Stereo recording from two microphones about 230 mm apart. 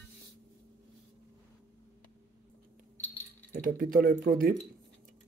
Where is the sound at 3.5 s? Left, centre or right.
Right.